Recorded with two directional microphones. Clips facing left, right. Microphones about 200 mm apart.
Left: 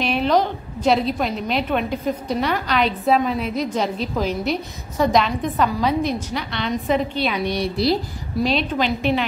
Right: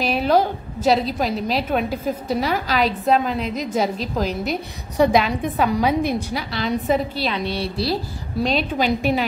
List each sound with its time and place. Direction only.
0.0 s a woman's voice: 5° right (ahead or behind)
4.9 s a woman's voice: 10° right (ahead or behind)
7.3 s a woman's voice: 15° left (ahead or behind)
8.4 s a woman's voice: centre (ahead or behind)